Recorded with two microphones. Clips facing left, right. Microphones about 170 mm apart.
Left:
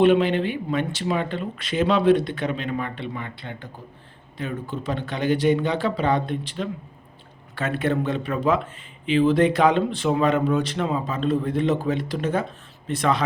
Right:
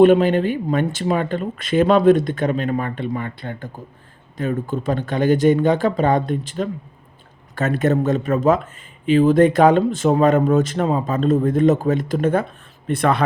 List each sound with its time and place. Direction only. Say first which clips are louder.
0.0 s a man's voice: right 5 dB; 45° right (ahead or behind)